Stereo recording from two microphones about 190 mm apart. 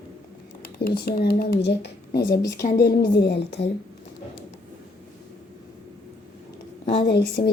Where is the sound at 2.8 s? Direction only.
60° left (ahead or behind).